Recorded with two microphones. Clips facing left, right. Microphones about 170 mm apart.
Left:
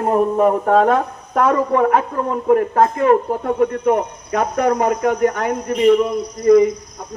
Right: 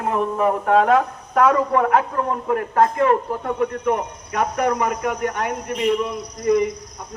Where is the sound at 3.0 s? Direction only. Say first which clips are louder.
Left 4 dB; 40° left (ahead or behind).